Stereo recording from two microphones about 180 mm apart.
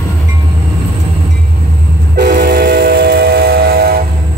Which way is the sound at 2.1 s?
65° right (ahead or behind).